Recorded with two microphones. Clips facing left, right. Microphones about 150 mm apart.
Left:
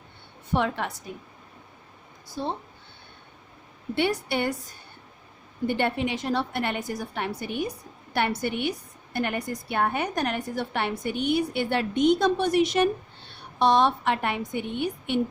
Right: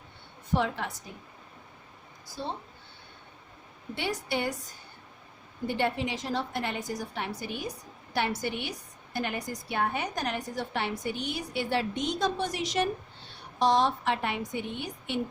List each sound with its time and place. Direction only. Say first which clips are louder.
0.5 s a woman's voice: left 3 dB; 60° left (ahead or behind)
2.4 s a woman's voice: left 5 dB; 55° left (ahead or behind)
3.9 s a woman's voice: left 6 dB; 60° left (ahead or behind)
5.6 s a woman's voice: left 4 dB; 60° left (ahead or behind)